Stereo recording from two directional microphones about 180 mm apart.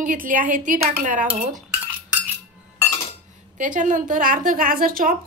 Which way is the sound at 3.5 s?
45° right (ahead or behind).